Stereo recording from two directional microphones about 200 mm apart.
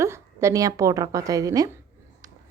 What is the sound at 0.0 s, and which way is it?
A woman's voice, 15° right (ahead or behind).